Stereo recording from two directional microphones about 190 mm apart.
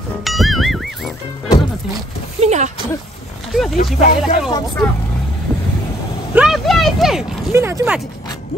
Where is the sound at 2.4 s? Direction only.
35° right (ahead or behind).